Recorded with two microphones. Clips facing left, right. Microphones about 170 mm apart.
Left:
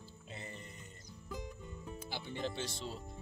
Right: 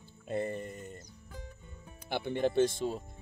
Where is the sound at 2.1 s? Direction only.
60° right (ahead or behind).